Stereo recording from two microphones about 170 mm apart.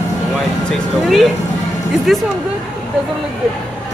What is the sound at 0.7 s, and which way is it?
Speech, centre (ahead or behind).